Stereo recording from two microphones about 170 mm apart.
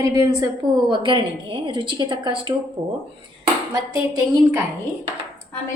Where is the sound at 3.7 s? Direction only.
20° right (ahead or behind).